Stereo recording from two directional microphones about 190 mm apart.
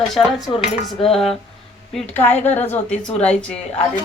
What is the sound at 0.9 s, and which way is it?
Speech, 30° left (ahead or behind).